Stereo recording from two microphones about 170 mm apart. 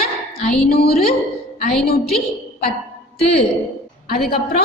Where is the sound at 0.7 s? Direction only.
65° left (ahead or behind).